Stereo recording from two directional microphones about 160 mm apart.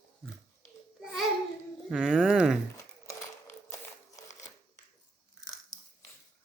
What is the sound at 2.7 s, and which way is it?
Crumpling, 20° left (ahead or behind).